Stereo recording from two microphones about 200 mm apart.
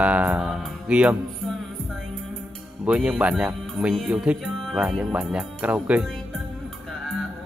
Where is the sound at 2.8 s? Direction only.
5° right (ahead or behind).